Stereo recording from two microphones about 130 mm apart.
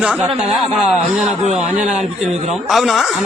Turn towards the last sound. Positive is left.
turn(degrees=0)  # may be behind; listen again after turning